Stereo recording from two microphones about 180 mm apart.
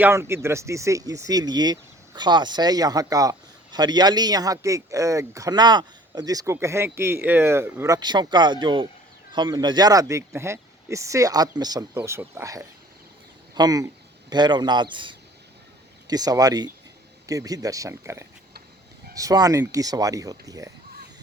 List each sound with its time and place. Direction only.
0.0 s speech: 15° right (ahead or behind)